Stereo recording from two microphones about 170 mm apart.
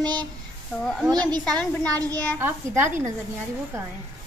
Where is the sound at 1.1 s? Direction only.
25° right (ahead or behind).